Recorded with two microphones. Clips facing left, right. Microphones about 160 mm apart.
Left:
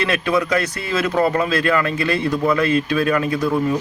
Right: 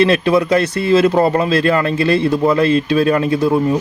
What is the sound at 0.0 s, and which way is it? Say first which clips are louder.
Speech: right 7 dB; 30° right (ahead or behind).